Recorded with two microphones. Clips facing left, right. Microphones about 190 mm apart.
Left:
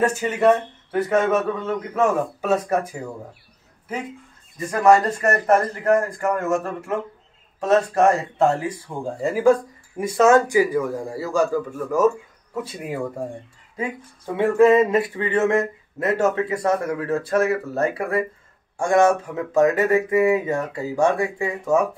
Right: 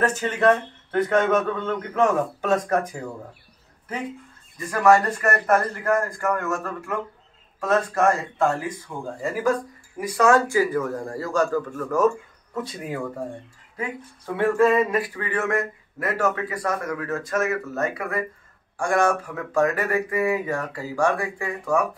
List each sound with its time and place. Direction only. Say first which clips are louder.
0.0 s a man's voice: left 2 dB; 10° left (ahead or behind)
4.6 s speech: left 2 dB; 20° left (ahead or behind)